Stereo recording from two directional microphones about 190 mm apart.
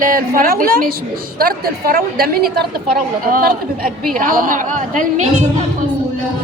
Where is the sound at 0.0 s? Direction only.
50° right (ahead or behind).